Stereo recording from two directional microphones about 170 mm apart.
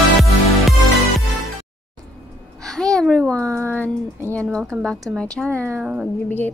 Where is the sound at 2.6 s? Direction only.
5° left (ahead or behind).